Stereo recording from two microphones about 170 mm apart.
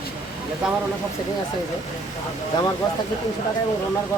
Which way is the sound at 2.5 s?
25° left (ahead or behind).